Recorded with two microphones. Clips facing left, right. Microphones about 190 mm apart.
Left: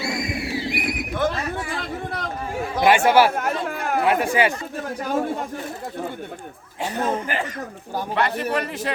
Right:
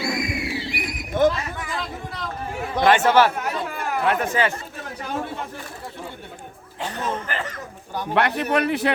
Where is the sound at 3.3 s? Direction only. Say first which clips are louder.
Left 3 dB; 50° left (ahead or behind).